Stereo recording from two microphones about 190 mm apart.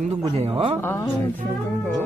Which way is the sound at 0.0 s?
30° right (ahead or behind).